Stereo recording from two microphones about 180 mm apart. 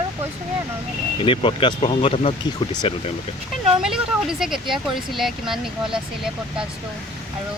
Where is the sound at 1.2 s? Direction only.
30° left (ahead or behind).